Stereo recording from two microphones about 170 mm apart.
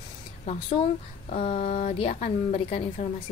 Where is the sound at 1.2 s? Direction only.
35° left (ahead or behind).